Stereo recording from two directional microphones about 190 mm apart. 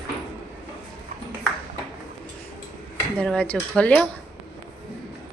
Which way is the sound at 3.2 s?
5° left (ahead or behind).